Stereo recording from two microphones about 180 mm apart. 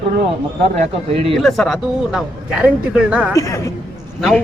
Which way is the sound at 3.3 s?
20° left (ahead or behind).